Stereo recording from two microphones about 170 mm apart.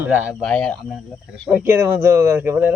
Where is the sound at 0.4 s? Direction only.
5° left (ahead or behind).